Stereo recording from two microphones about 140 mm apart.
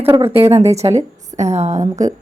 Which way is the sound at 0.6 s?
50° right (ahead or behind).